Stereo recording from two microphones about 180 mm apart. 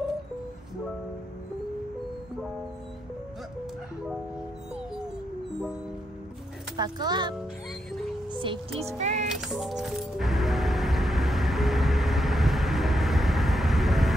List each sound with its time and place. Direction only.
4.7 s music: 5° right (ahead or behind)
6.8 s speech: 25° right (ahead or behind); by 9.3 s 40° right (ahead or behind)
9.3 s music: 5° right (ahead or behind)